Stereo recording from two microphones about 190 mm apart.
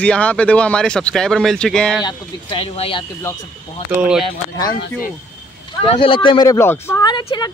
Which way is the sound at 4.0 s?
5° right (ahead or behind).